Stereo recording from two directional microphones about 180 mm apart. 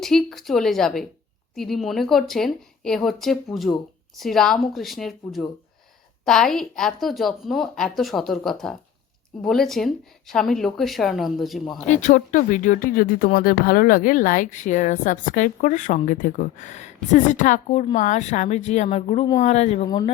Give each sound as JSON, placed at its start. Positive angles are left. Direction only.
{"t": 0.0, "sound": "speech", "side_deg": 0}
{"t": 11.9, "sound": "a woman's voice", "side_deg": 45}